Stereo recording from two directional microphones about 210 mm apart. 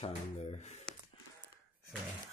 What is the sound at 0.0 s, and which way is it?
Speech, 30° left (ahead or behind).